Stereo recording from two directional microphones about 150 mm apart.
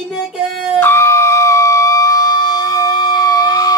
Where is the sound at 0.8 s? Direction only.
20° left (ahead or behind).